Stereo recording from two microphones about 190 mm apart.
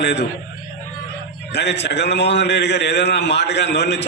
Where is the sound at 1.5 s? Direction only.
65° left (ahead or behind).